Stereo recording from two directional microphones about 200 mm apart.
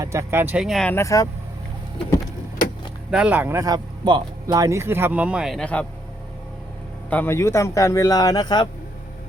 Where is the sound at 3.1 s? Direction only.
5° right (ahead or behind).